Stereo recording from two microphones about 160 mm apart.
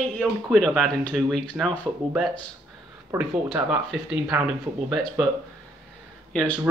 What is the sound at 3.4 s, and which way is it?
Speech, centre (ahead or behind).